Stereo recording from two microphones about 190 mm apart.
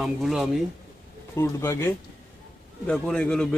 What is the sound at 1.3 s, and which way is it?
A man's voice, 15° left (ahead or behind).